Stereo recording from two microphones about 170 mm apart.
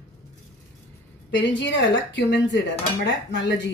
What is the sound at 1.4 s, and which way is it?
Speech, 90° left.